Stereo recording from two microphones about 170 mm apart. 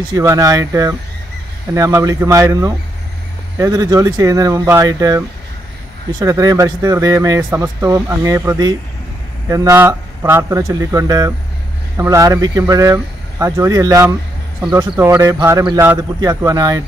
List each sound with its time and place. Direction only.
0.1 s speech: 20° right (ahead or behind)